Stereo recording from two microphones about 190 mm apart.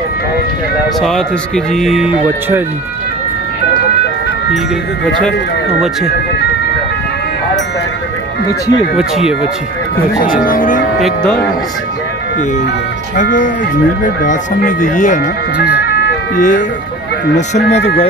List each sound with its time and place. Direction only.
1.0 s speech: centre (ahead or behind)
8.9 s speech: 5° right (ahead or behind)
10.2 s speech: 45° left (ahead or behind)
11.0 s speech: centre (ahead or behind)
13.1 s speech: 40° left (ahead or behind)
16.3 s speech: 40° left (ahead or behind)